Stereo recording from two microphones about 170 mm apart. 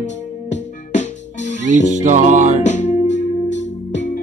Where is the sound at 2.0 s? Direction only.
45° right (ahead or behind).